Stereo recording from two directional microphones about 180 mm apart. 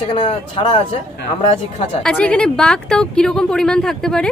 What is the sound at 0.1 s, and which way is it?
Speech, 30° left (ahead or behind).